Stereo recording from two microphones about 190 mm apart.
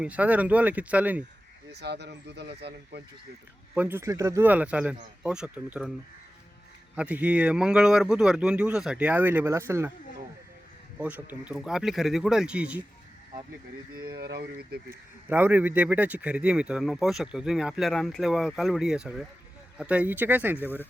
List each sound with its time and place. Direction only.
0.0 s speech: 5° right (ahead or behind)
1.7 s speech: 60° right (ahead or behind)
3.8 s speech: 10° right (ahead or behind)
6.9 s speech: 5° right (ahead or behind)
10.9 s speech: 5° right (ahead or behind)
13.9 s speech: 55° right (ahead or behind)
14.8 s speech: 10° right (ahead or behind)